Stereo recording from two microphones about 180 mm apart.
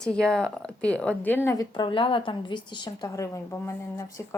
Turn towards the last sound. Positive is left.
turn(degrees=15)  # may be behind; listen again after turning